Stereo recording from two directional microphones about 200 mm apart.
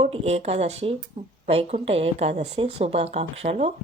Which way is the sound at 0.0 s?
30° right (ahead or behind).